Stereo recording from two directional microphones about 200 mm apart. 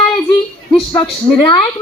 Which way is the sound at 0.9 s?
20° left (ahead or behind).